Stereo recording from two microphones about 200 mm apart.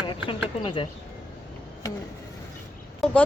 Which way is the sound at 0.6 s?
25° left (ahead or behind).